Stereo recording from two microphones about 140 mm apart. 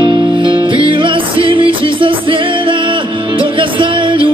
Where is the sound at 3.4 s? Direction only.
35° right (ahead or behind).